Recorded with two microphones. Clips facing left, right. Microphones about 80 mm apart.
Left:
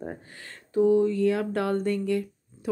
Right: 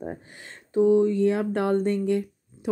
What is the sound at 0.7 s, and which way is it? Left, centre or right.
Speech, right.